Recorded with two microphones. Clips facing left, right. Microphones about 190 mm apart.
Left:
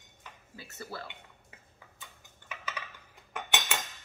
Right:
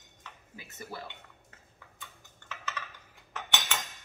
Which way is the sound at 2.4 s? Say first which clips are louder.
Right 1 dB; 10° left (ahead or behind).